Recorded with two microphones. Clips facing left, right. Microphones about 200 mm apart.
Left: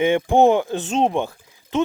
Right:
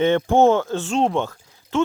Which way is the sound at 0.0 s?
15° left (ahead or behind).